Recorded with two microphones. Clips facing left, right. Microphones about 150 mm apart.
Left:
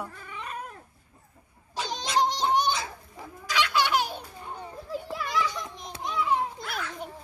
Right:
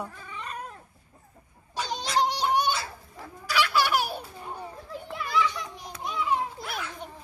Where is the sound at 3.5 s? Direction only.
10° right (ahead or behind).